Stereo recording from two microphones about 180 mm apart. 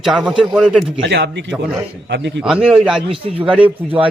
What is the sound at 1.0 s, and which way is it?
A man's voice, 70° right (ahead or behind).